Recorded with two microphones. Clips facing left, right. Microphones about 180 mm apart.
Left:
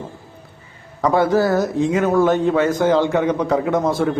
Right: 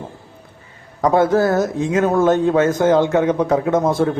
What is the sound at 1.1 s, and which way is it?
A man's voice, 20° right (ahead or behind).